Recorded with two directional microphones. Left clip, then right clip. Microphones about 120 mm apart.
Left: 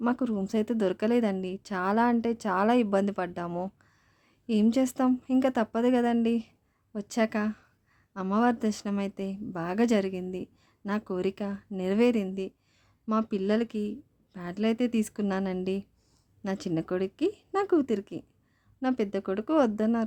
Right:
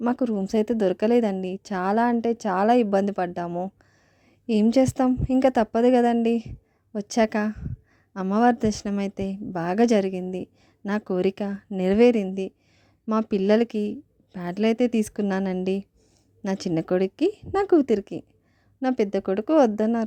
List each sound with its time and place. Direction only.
0.0 s a woman's voice: 30° right (ahead or behind)